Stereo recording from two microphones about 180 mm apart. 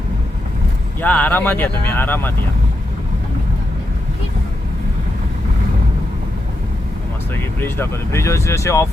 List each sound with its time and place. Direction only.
1.0 s speech: 10° left (ahead or behind)
7.6 s speech: 15° left (ahead or behind)